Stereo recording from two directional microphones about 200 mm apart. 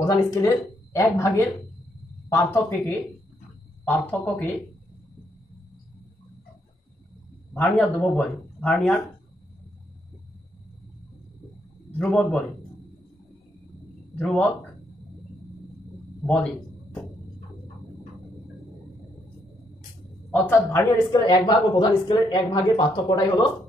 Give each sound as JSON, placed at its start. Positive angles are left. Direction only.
{"t": 0.0, "sound": "speech", "side_deg": 15}
{"t": 7.5, "sound": "speech", "side_deg": 10}
{"t": 12.0, "sound": "a man's voice", "side_deg": 5}
{"t": 14.1, "sound": "a man's voice", "side_deg": 5}
{"t": 20.2, "sound": "speech", "side_deg": 15}